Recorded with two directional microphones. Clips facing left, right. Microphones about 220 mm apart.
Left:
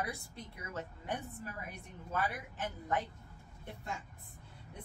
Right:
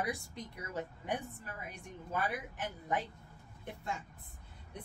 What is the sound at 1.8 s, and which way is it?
Speech, 15° right (ahead or behind).